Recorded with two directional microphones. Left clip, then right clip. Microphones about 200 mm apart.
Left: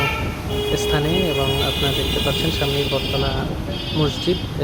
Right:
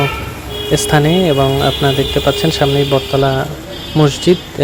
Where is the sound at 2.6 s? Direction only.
40° right (ahead or behind).